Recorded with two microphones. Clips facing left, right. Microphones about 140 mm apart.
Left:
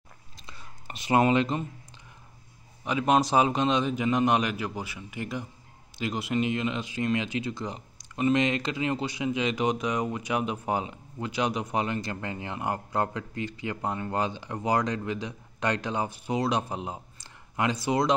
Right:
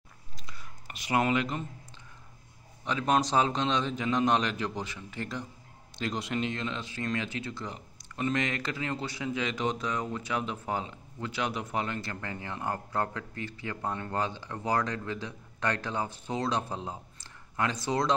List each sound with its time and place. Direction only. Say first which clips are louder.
0.4 s whispering: left 1 dB; 25° left (ahead or behind)
2.8 s speech: left 3 dB; 10° left (ahead or behind)